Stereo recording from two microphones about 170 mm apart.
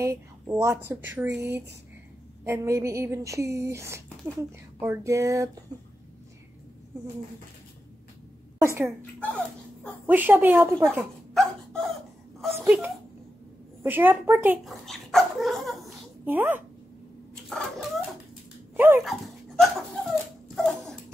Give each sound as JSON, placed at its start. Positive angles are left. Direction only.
{"t": 0.0, "sound": "speech", "side_deg": -15}
{"t": 2.4, "sound": "speech", "side_deg": -15}
{"t": 8.5, "sound": "speech", "side_deg": -15}
{"t": 9.0, "sound": "speech", "side_deg": 10}
{"t": 10.0, "sound": "speech", "side_deg": -10}
{"t": 11.3, "sound": "dog", "side_deg": 0}
{"t": 12.5, "sound": "speech", "side_deg": -10}
{"t": 14.6, "sound": "speech", "side_deg": 0}
{"t": 16.3, "sound": "speech", "side_deg": -10}
{"t": 17.5, "sound": "dog", "side_deg": 0}
{"t": 19.0, "sound": "dog", "side_deg": 0}